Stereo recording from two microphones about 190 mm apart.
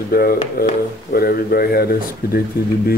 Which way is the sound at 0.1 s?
50° left (ahead or behind).